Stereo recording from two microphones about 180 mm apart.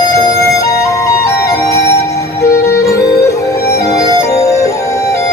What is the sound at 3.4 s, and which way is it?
Music, 15° left (ahead or behind).